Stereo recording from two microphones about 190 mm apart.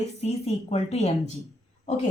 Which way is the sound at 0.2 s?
35° left (ahead or behind).